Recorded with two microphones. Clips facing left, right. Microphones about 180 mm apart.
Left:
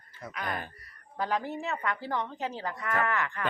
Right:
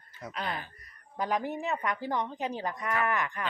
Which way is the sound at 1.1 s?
15° right (ahead or behind).